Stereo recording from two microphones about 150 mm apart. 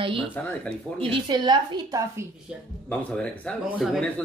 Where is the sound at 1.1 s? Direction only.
30° right (ahead or behind).